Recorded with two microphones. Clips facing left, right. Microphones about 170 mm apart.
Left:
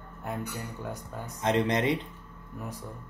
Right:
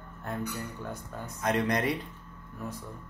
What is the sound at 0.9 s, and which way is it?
A man's voice, 25° left (ahead or behind).